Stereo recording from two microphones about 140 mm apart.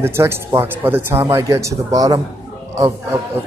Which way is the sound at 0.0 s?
15° right (ahead or behind).